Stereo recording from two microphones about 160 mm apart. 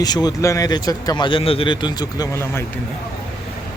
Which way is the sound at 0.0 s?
25° left (ahead or behind).